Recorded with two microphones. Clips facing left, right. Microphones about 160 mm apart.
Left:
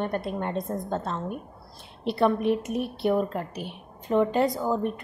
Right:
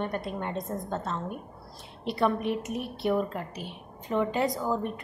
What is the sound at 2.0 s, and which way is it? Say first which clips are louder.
Speech: left 4 dB; 30° left (ahead or behind).